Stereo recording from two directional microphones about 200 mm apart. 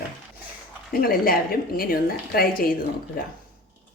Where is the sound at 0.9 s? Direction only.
45° left (ahead or behind).